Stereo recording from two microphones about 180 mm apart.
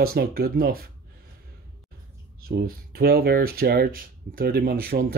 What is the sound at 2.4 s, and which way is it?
Speech, 60° right (ahead or behind).